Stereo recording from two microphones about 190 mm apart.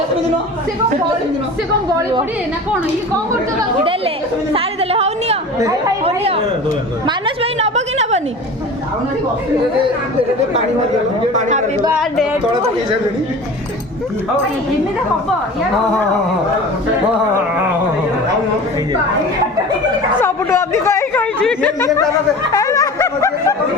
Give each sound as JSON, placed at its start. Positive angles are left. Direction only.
{"t": 1.9, "sound": "a woman's voice", "side_deg": -20}
{"t": 4.5, "sound": "a woman's voice", "side_deg": -30}
{"t": 11.3, "sound": "a woman's voice", "side_deg": -40}
{"t": 20.2, "sound": "a sound", "side_deg": 15}
{"t": 22.5, "sound": "snicker", "side_deg": 15}